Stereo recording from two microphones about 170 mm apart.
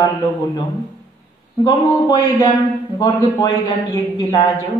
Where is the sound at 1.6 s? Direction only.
25° left (ahead or behind).